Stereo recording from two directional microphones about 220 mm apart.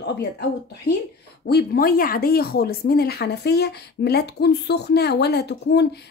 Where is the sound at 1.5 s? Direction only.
45° left (ahead or behind).